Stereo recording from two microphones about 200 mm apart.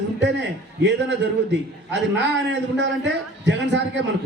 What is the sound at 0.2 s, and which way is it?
Speech, 60° right (ahead or behind).